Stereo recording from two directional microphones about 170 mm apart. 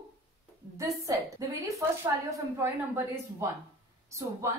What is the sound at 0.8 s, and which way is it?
A woman's voice, 20° right (ahead or behind).